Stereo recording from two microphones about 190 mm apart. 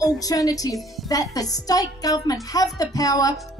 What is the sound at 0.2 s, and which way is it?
Speech, 20° left (ahead or behind).